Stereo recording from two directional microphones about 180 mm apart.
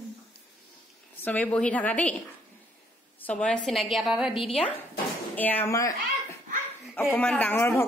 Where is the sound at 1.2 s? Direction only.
10° left (ahead or behind).